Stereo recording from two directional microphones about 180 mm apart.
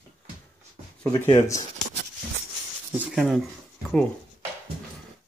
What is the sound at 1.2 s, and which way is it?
Speech, 15° left (ahead or behind).